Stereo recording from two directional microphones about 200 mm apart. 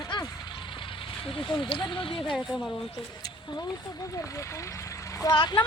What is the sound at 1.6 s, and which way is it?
Speech, 25° left (ahead or behind).